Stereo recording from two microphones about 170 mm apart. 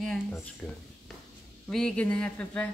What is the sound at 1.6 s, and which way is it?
Speech, 5° left (ahead or behind).